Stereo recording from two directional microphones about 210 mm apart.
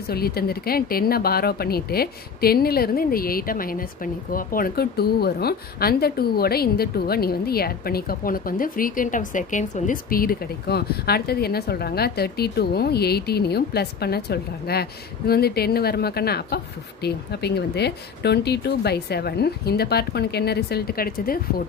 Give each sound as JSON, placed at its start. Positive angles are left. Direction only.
{"t": 0.1, "sound": "speech", "side_deg": 45}